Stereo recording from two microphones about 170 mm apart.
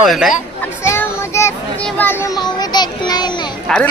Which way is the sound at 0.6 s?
15° left (ahead or behind).